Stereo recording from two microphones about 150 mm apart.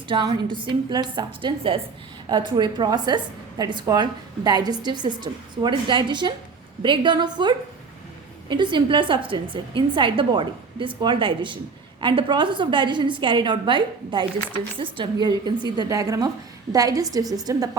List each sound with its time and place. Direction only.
0.1 s a woman's voice: 30° right (ahead or behind)